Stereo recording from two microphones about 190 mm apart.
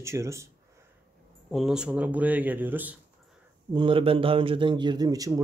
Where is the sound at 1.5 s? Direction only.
Centre (ahead or behind).